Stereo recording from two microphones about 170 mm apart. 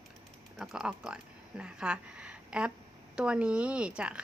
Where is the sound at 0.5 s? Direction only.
5° right (ahead or behind).